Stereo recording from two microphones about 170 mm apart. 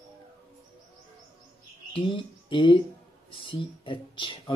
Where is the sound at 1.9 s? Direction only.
30° left (ahead or behind).